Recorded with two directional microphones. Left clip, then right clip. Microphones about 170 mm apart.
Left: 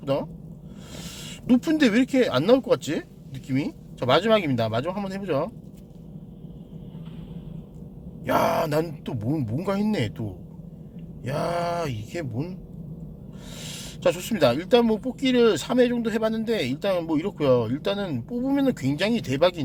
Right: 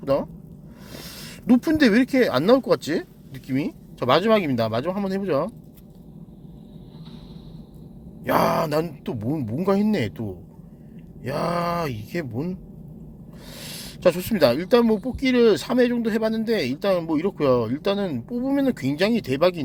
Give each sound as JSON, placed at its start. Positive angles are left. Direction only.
{"t": 0.0, "sound": "speech", "side_deg": -15}
{"t": 8.2, "sound": "speech", "side_deg": -20}
{"t": 13.6, "sound": "speech", "side_deg": -25}